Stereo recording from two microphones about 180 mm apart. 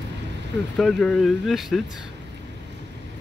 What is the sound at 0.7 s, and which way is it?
Speech, centre (ahead or behind).